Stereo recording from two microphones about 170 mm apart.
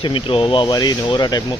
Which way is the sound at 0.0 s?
30° left (ahead or behind).